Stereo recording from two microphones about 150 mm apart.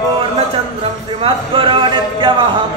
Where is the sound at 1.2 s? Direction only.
35° right (ahead or behind).